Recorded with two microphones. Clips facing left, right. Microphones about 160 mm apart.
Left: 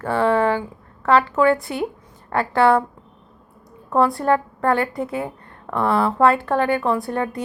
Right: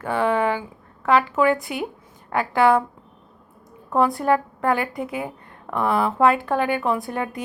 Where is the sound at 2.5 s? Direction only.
Centre (ahead or behind).